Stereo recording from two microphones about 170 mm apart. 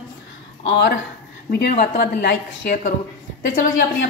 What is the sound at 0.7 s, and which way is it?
Speech, 75° left (ahead or behind).